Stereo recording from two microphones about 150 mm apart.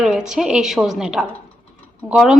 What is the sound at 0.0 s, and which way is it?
A woman's voice, 5° right (ahead or behind).